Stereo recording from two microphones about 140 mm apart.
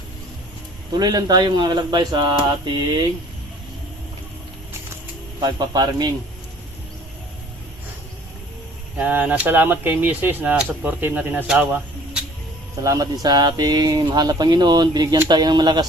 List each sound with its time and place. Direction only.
0.9 s speech: 30° right (ahead or behind)
5.4 s speech: 30° right (ahead or behind)
9.0 s speech: 10° right (ahead or behind)
12.8 s speech: 25° right (ahead or behind)